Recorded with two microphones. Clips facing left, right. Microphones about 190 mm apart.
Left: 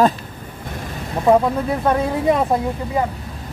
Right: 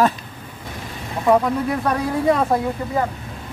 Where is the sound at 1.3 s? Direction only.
25° left (ahead or behind).